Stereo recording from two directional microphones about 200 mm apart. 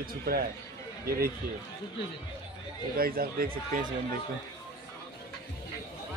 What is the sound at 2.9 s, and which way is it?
Speech, 50° right (ahead or behind).